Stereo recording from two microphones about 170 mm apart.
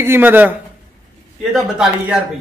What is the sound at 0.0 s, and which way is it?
A man's voice, 10° right (ahead or behind).